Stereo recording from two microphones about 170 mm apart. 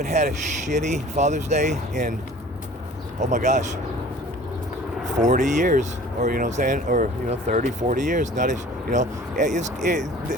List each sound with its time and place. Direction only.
0.0 s speech: 40° right (ahead or behind)
3.2 s speech: 45° right (ahead or behind)
5.1 s speech: 45° right (ahead or behind)